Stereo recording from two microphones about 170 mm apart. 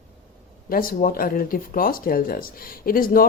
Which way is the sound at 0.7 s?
55° left (ahead or behind).